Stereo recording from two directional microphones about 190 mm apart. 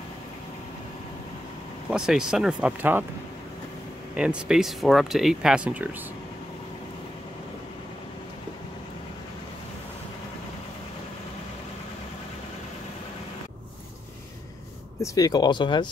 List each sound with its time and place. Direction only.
1.9 s speech: 5° right (ahead or behind)
4.1 s speech: 5° right (ahead or behind)
15.0 s speech: 20° left (ahead or behind)